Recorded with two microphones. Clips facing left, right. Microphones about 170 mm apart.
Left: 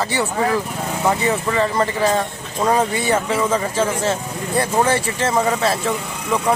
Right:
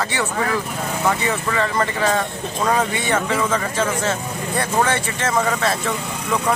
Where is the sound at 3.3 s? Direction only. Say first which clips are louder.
Left 2 dB; 10° left (ahead or behind).